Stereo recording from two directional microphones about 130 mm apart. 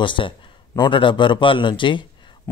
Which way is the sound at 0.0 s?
40° left (ahead or behind).